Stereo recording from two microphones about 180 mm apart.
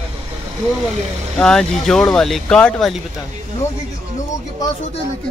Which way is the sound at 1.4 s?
5° left (ahead or behind).